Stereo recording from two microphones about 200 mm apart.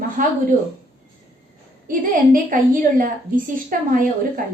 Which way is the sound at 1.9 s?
45° right (ahead or behind).